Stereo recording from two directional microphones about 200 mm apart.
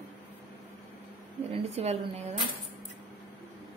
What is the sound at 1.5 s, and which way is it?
Speech, 30° right (ahead or behind).